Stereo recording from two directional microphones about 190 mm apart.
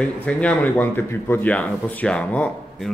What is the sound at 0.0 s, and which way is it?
Speech, 5° left (ahead or behind).